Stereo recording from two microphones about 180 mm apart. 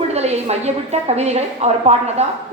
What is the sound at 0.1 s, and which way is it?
A woman's voice, 35° right (ahead or behind).